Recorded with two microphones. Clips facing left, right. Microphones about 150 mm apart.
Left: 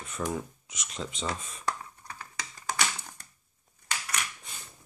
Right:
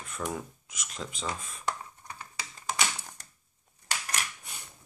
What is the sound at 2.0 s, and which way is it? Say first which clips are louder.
Typing: left 1 dB; 15° right (ahead or behind).